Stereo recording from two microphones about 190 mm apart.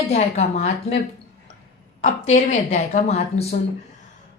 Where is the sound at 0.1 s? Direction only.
35° left (ahead or behind).